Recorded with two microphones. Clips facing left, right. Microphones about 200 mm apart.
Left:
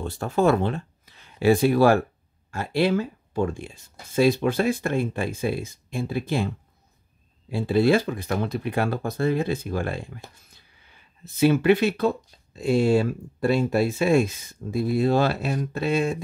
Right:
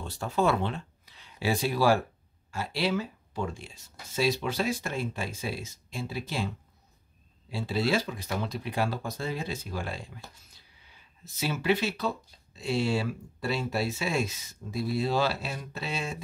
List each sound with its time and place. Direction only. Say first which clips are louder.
0.0 s speech: left 6 dB; 55° left (ahead or behind)
7.5 s speech: left 8 dB; 55° left (ahead or behind)